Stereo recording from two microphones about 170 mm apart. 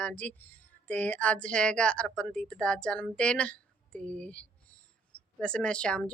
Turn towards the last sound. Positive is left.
turn(degrees=5)  # may be behind; listen again after turning